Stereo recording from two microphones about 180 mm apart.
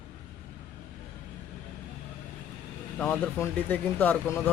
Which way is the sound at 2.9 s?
10° left (ahead or behind).